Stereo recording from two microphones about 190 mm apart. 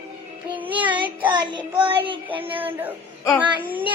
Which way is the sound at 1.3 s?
25° right (ahead or behind).